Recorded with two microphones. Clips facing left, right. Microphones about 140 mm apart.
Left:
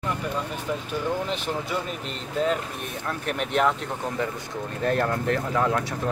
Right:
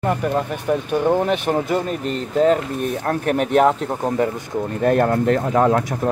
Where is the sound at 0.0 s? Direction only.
60° right (ahead or behind).